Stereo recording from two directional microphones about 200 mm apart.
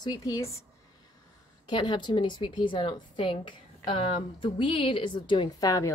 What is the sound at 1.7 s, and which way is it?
A woman's voice, 25° left (ahead or behind).